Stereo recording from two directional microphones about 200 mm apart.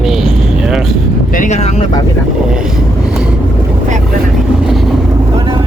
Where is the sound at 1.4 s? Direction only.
35° left (ahead or behind).